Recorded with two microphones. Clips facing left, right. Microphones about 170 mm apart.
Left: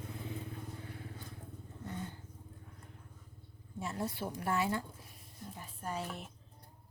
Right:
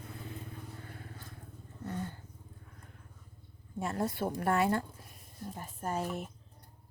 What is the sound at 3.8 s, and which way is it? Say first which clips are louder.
Speech: right 5 dB; 55° right (ahead or behind).